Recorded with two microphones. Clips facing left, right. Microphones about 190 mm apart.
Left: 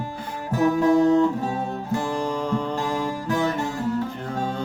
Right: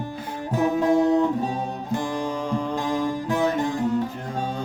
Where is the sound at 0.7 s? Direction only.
20° right (ahead or behind).